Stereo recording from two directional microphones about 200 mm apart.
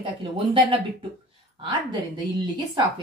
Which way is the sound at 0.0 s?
25° right (ahead or behind).